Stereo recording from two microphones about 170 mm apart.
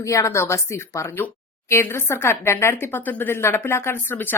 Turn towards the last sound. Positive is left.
turn(degrees=15)  # may be behind; listen again after turning